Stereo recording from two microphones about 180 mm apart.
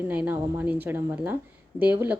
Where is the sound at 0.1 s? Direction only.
10° right (ahead or behind).